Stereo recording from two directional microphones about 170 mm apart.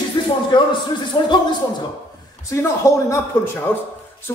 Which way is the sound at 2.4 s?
15° left (ahead or behind).